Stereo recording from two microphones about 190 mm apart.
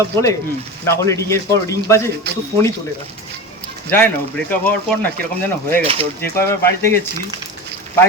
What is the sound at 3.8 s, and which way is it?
Speech, 10° left (ahead or behind).